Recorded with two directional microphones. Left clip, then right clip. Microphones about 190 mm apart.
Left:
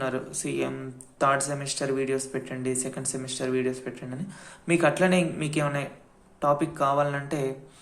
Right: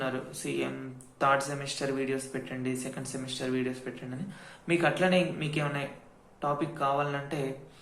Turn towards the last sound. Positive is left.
turn(degrees=35)  # may be behind; listen again after turning